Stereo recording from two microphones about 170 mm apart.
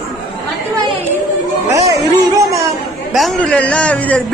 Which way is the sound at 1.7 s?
20° right (ahead or behind).